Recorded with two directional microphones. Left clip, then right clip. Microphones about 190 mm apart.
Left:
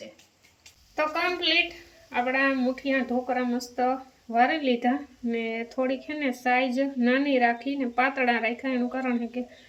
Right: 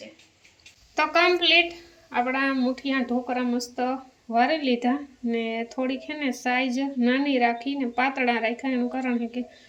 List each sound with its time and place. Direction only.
0.9 s speech: 5° right (ahead or behind)